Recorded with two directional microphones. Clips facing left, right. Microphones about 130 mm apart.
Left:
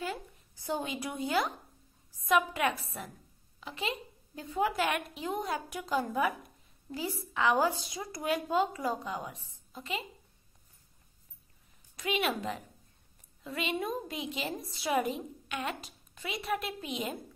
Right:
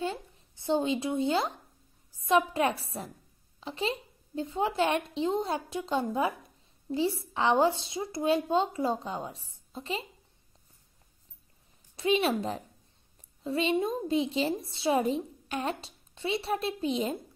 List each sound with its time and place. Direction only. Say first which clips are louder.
0.0 s a sound: right 4 dB; 25° right (ahead or behind)
2.1 s a woman's voice: right 3 dB; 30° right (ahead or behind)
11.9 s a woman's voice: right 6 dB; 30° right (ahead or behind)